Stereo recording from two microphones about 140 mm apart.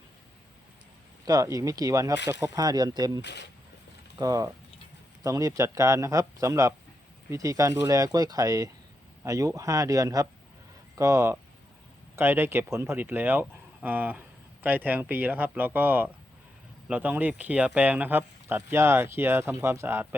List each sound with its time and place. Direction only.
1.2 s speech: 25° right (ahead or behind)
4.2 s speech: 25° right (ahead or behind)